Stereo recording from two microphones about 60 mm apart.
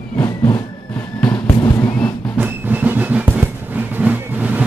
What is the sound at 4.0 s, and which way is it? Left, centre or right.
Vehicle, right.